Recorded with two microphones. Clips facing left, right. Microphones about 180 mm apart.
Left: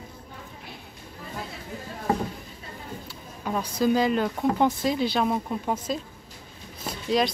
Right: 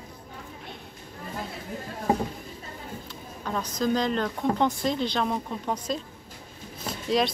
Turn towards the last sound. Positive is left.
turn(degrees=0)  # may be behind; listen again after turning